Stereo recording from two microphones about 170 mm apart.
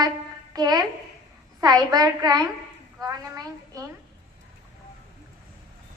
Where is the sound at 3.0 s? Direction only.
20° right (ahead or behind).